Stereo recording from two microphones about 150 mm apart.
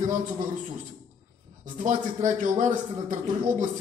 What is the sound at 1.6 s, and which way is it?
A man's voice, 55° right (ahead or behind).